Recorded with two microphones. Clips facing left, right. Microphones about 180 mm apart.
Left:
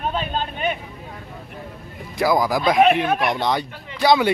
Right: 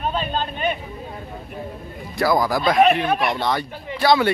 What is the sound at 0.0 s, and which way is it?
Vehicle, 15° left (ahead or behind).